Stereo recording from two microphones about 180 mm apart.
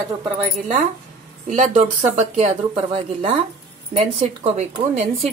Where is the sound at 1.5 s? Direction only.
40° right (ahead or behind).